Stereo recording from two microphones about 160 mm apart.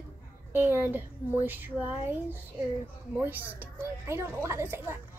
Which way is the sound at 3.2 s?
10° right (ahead or behind).